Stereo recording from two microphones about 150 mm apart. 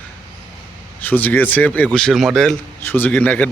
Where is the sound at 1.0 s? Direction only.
10° left (ahead or behind).